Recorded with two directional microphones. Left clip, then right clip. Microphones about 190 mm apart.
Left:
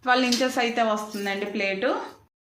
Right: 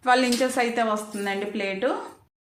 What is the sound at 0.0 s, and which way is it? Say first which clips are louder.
A woman's voice: right 1 dB; 15° right (ahead or behind).